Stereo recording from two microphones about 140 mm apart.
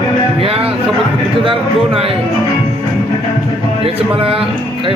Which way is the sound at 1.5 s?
40° right (ahead or behind).